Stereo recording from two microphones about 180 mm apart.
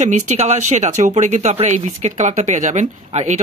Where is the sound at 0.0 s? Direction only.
40° right (ahead or behind).